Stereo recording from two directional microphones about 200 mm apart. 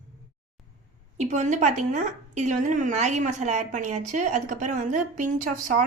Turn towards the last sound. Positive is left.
turn(degrees=-40)  # may be behind; listen again after turning